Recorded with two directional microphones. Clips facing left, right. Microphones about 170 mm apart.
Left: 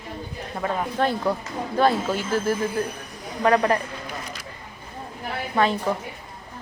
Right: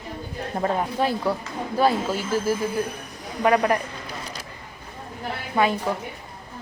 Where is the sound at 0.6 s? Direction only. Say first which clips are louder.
Right 2 dB; 35° right (ahead or behind).